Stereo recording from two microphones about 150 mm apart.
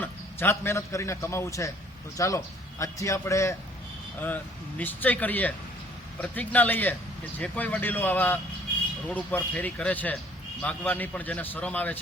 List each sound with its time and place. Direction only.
0.0 s a man's voice: 15° left (ahead or behind)
4.8 s a man's voice: 10° left (ahead or behind)